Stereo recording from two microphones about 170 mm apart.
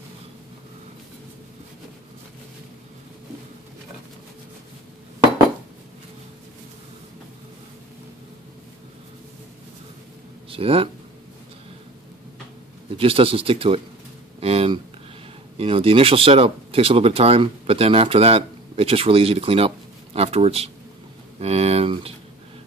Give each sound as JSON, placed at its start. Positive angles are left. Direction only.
{"t": 10.5, "sound": "speech", "side_deg": -35}
{"t": 12.9, "sound": "speech", "side_deg": -35}
{"t": 14.4, "sound": "a sound", "side_deg": -35}
{"t": 15.5, "sound": "speech", "side_deg": -35}